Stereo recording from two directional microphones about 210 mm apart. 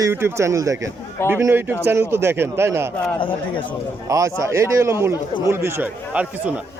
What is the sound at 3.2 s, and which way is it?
Speech, 25° left (ahead or behind).